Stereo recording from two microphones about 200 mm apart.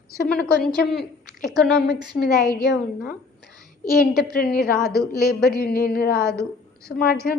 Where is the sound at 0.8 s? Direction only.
50° left (ahead or behind).